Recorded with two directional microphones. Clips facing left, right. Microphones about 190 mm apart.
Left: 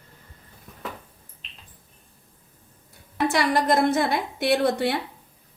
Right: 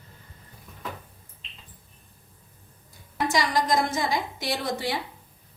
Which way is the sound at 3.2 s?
60° left (ahead or behind).